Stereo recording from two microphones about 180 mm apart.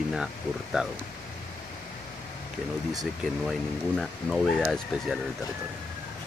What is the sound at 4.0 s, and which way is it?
Speech, centre (ahead or behind).